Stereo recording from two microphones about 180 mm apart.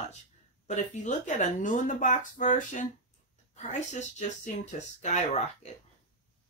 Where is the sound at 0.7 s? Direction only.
40° left (ahead or behind).